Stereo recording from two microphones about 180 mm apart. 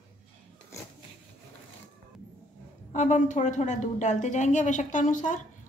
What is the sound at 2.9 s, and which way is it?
A woman's voice, 45° left (ahead or behind).